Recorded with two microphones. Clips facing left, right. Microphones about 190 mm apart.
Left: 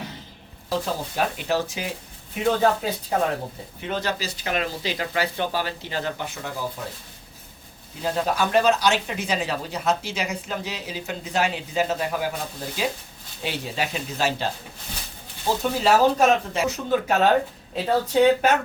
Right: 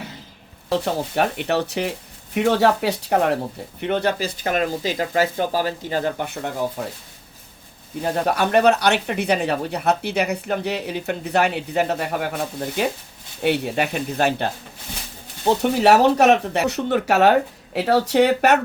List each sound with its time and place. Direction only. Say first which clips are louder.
0.7 s speech: right 5 dB; 65° right (ahead or behind)
8.0 s speech: right 3 dB; 60° right (ahead or behind)
15.4 s speech: right 5 dB; 70° right (ahead or behind)